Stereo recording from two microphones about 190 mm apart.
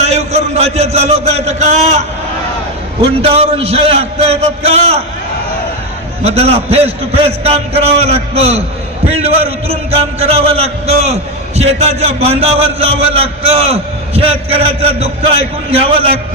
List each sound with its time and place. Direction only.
0.0 s a man's voice: 35° right (ahead or behind)
3.2 s a man's voice: 30° right (ahead or behind)
6.2 s a man's voice: 30° right (ahead or behind)